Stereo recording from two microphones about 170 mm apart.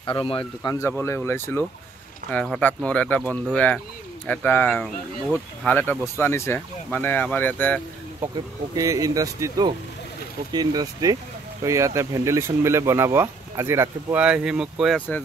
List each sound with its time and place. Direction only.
0.0 s speech: 30° left (ahead or behind)
0.7 s speech: 15° left (ahead or behind)
8.7 s speech: 20° right (ahead or behind); by 15.0 s 5° right (ahead or behind)
15.0 s speech: 10° left (ahead or behind)